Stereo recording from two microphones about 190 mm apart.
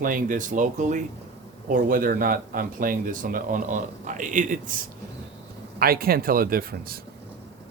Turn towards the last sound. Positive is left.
turn(degrees=-50)  # may be behind; listen again after turning